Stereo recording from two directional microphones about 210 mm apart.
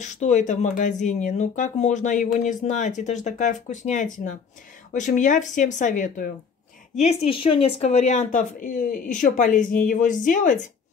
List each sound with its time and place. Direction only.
0.0 s speech: 35° left (ahead or behind)